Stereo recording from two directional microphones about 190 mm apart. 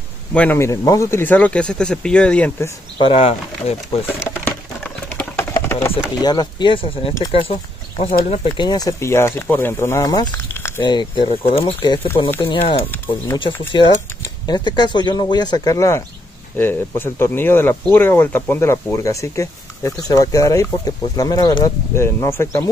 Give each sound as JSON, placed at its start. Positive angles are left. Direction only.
{"t": 0.3, "sound": "speech", "side_deg": 10}
{"t": 3.0, "sound": "speech", "side_deg": 30}
{"t": 4.5, "sound": "a sound", "side_deg": 10}
{"t": 6.2, "sound": "speech", "side_deg": 25}
{"t": 12.7, "sound": "speech", "side_deg": 10}
{"t": 13.8, "sound": "speech", "side_deg": 25}